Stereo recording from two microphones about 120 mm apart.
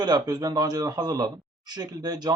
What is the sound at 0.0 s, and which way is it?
Speech, 35° right (ahead or behind).